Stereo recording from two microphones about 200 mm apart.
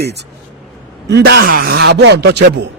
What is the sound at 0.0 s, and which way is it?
A man's voice, 55° right (ahead or behind).